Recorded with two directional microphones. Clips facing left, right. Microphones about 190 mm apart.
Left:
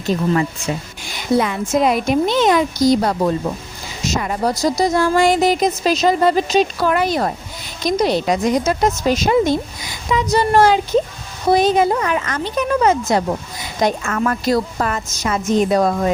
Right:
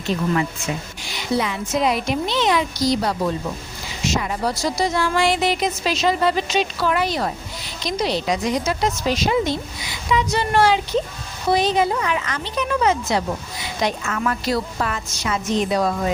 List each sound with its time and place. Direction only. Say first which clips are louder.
0.0 s speech: left 4 dB; 40° left (ahead or behind)